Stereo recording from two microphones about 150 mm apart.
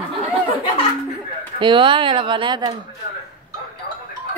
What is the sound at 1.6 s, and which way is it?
Speech, 35° right (ahead or behind).